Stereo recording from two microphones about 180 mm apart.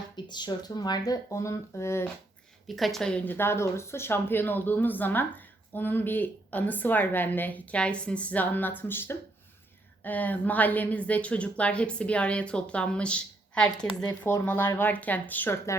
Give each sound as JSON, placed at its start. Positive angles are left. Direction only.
{"t": 0.3, "sound": "speech", "side_deg": 25}
{"t": 2.6, "sound": "speech", "side_deg": 0}
{"t": 14.1, "sound": "speech", "side_deg": 15}